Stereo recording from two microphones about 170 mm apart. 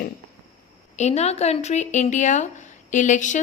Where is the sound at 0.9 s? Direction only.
40° left (ahead or behind).